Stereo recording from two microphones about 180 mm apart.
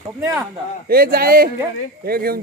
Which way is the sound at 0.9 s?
55° right (ahead or behind).